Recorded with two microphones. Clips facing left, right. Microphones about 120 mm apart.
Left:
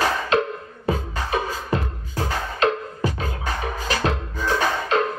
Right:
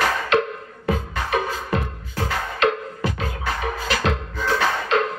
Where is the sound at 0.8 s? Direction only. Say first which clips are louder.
Right 1 dB; 30° left (ahead or behind).